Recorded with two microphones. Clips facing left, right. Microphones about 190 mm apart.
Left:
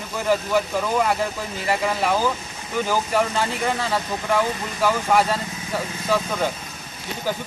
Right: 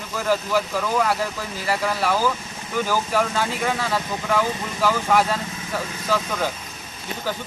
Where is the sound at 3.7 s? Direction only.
10° left (ahead or behind).